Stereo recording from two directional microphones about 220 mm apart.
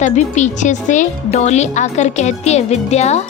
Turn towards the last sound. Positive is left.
turn(degrees=30)  # may be behind; listen again after turning